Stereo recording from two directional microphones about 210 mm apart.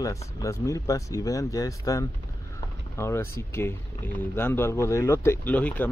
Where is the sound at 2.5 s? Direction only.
10° left (ahead or behind).